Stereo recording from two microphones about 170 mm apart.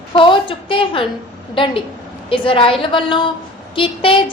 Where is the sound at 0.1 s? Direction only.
30° left (ahead or behind).